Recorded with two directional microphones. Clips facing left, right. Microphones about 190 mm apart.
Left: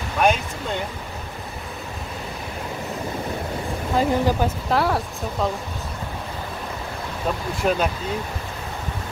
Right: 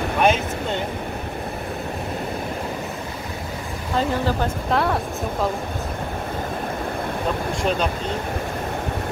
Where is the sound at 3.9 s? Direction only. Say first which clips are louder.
Left 2 dB; 10° left (ahead or behind).